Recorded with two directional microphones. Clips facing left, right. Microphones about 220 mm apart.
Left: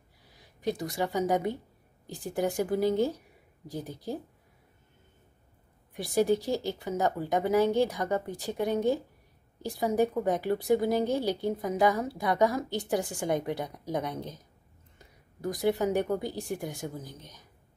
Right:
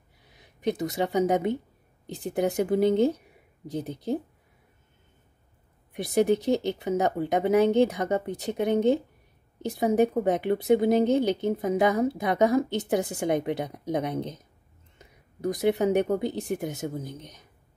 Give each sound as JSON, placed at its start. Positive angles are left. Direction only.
{"t": 0.2, "sound": "speech", "side_deg": -20}
{"t": 5.9, "sound": "speech", "side_deg": -20}